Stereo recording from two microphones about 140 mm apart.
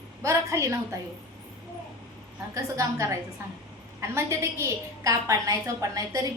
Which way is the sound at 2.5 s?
25° right (ahead or behind).